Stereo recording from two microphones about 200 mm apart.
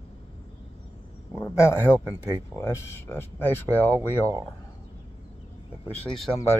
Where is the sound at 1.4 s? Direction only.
10° left (ahead or behind).